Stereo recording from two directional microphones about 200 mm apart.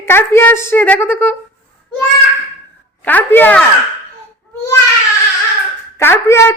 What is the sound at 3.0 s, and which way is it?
Speech, 10° left (ahead or behind).